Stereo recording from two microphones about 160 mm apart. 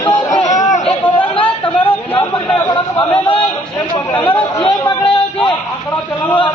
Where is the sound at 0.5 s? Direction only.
50° left (ahead or behind).